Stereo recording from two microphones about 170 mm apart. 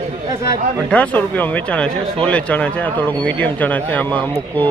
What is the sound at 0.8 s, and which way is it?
Speech, 10° left (ahead or behind).